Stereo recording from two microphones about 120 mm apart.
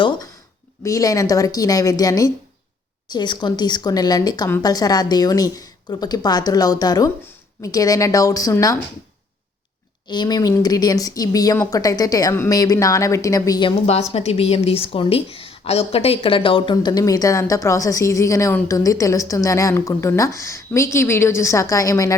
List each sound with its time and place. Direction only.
0.0 s a woman's voice: 40° left (ahead or behind)
0.9 s a woman's voice: 30° left (ahead or behind)
10.1 s a woman's voice: 35° left (ahead or behind)
13.7 s a woman's voice: 60° left (ahead or behind)
16.7 s a woman's voice: 35° left (ahead or behind)